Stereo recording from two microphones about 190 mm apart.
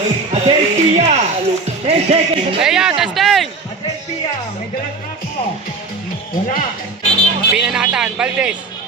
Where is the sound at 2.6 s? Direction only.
5° right (ahead or behind).